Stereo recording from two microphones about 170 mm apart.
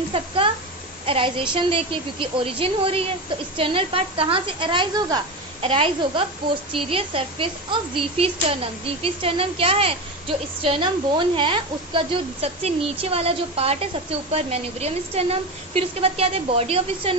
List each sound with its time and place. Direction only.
0.1 s speech: 30° right (ahead or behind)